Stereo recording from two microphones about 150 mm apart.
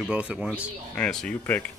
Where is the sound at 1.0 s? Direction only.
5° left (ahead or behind).